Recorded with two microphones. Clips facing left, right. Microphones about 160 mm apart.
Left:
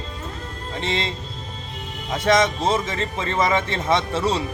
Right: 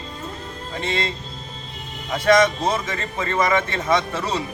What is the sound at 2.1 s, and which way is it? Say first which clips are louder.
Speech: right 2 dB; 25° left (ahead or behind).